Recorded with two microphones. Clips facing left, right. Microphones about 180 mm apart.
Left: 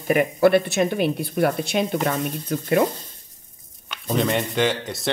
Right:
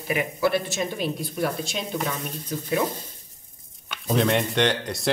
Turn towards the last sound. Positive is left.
turn(degrees=0)  # may be behind; listen again after turning